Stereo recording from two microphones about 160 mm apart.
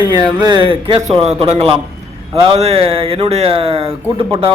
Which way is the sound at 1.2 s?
35° right (ahead or behind).